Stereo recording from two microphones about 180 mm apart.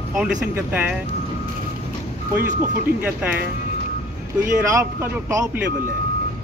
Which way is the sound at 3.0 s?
10° right (ahead or behind).